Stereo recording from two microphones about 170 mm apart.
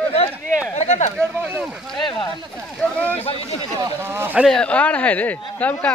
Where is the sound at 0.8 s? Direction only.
40° left (ahead or behind).